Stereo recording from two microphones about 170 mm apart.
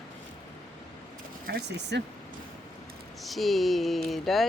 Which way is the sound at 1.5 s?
80° right.